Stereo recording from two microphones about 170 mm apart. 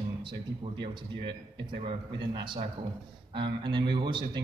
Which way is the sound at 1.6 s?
25° right (ahead or behind).